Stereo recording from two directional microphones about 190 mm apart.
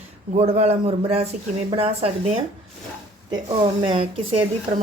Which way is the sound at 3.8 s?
25° right (ahead or behind).